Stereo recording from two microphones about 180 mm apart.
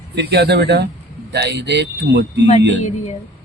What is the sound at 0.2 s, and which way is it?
A man's voice, 65° right (ahead or behind).